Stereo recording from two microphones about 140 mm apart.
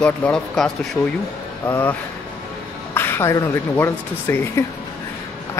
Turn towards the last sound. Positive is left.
turn(degrees=15)  # may be behind; listen again after turning